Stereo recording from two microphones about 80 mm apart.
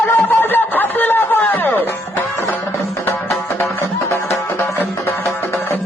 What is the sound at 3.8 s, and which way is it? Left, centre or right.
Music, left.